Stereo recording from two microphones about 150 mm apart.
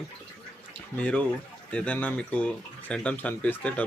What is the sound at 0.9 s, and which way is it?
Speech, 10° left (ahead or behind).